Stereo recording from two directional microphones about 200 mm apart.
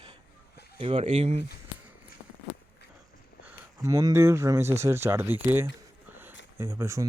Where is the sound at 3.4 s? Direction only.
15° right (ahead or behind).